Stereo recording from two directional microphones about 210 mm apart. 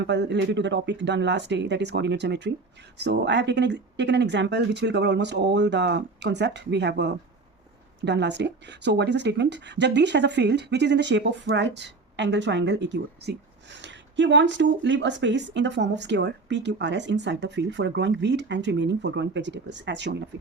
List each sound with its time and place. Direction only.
0.1 s speech: 55° right (ahead or behind)